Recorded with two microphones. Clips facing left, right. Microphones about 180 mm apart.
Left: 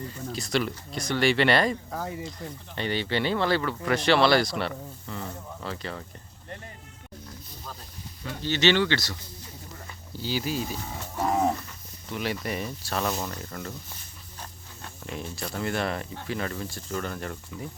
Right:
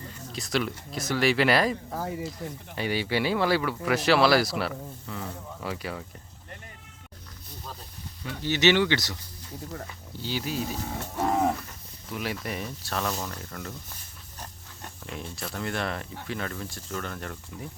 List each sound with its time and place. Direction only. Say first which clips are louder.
0.3 s speech: even; centre (ahead or behind)
8.4 s speech: right 1 dB; 15° right (ahead or behind)
10.1 s speech: left 2 dB; centre (ahead or behind)
12.0 s speech: left 2 dB; centre (ahead or behind)
15.0 s speech: left 2 dB; centre (ahead or behind)